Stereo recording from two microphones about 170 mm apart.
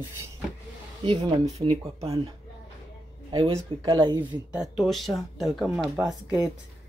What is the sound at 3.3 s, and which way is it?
Speech, 25° right (ahead or behind).